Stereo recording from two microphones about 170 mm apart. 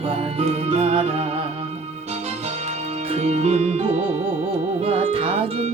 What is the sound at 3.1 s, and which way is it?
Music, 40° right (ahead or behind).